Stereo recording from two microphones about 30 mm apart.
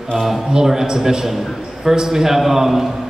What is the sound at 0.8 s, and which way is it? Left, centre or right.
A man's voice, centre.